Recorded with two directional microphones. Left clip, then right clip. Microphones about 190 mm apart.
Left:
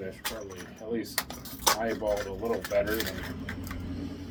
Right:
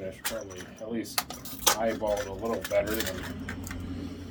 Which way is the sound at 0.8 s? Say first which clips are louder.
Left 2 dB; 20° right (ahead or behind).